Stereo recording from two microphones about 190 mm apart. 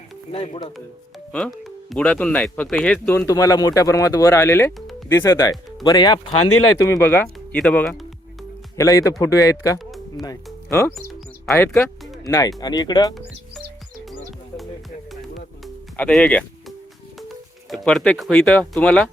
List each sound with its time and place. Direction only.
0.3 s speech: 30° left (ahead or behind)
1.3 s speech: centre (ahead or behind)
8.7 s speech: 15° left (ahead or behind)
9.7 s music: centre (ahead or behind)
10.2 s speech: 15° left (ahead or behind)
15.1 s music: centre (ahead or behind)
17.8 s speech: 5° left (ahead or behind)